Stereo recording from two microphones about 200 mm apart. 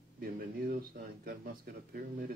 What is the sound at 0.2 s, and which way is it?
Speech, 50° right (ahead or behind).